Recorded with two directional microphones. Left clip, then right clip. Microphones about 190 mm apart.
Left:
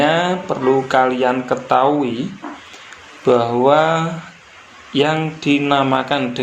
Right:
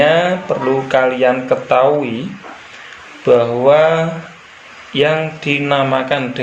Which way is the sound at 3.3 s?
35° left (ahead or behind).